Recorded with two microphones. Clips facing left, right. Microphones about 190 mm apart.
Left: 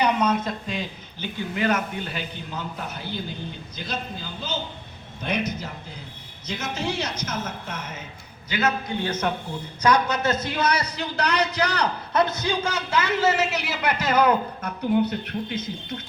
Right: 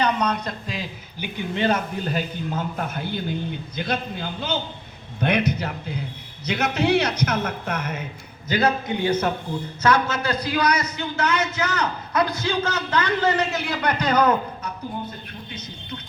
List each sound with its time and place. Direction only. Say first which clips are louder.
0.0 s speech: left 1 dB; 10° left (ahead or behind)
1.2 s a man's voice: even; 15° right (ahead or behind)
1.5 s a man's voice: right 2 dB; 30° right (ahead or behind)
2.0 s a man's voice: right 7 dB; 45° right (ahead or behind); by 8.0 s 60° right (ahead or behind)
8.4 s a man's voice: right 4 dB; 40° right (ahead or behind)
8.9 s a man's voice: right 5 dB; 15° right (ahead or behind)
9.8 s a man's voice: even; 15° left (ahead or behind); by 12.2 s 35° left (ahead or behind)
12.2 s a man's voice: right 1 dB; 20° left (ahead or behind)
14.9 s speech: left 10 dB; 75° left (ahead or behind)